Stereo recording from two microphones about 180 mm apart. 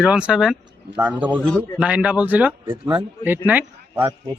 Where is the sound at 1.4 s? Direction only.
10° left (ahead or behind).